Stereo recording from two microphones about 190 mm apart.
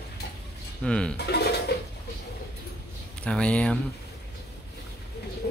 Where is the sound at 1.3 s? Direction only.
60° left (ahead or behind).